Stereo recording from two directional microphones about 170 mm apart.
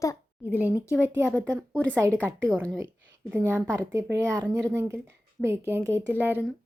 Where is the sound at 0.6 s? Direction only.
10° right (ahead or behind).